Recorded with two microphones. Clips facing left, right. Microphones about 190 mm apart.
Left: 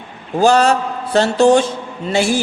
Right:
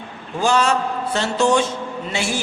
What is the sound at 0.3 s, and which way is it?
A man's voice, 35° left (ahead or behind).